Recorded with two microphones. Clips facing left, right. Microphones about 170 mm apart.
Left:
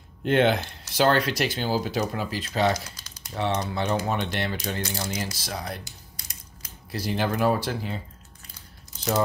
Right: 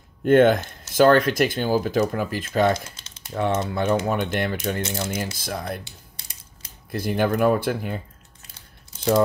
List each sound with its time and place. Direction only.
0.2 s speech: 45° right (ahead or behind)
2.7 s typing: 25° right (ahead or behind)
3.6 s speech: 50° right (ahead or behind)
4.8 s speech: 25° right (ahead or behind)
5.1 s speech: 50° right (ahead or behind)
5.9 s typing: 30° right (ahead or behind)
6.9 s speech: 50° right (ahead or behind)